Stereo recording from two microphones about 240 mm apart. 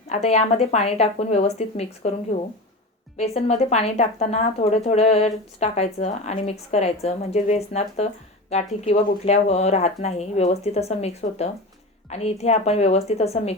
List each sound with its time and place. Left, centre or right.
0.1 s a woman's voice: left
3.2 s a woman's voice: left